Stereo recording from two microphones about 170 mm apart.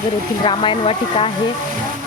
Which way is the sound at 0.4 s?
30° left (ahead or behind).